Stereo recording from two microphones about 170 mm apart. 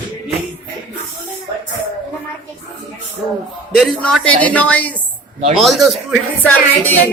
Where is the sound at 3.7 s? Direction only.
5° left (ahead or behind).